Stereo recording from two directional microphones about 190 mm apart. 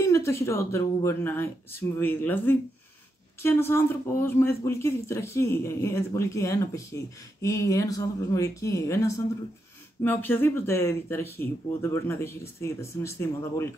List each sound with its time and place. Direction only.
0.0 s speech: 15° left (ahead or behind)